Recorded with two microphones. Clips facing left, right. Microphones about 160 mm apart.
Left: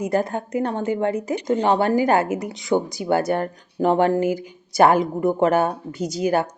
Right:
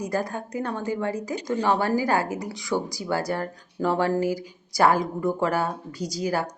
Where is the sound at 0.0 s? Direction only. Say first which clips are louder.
Left 5 dB; 25° left (ahead or behind).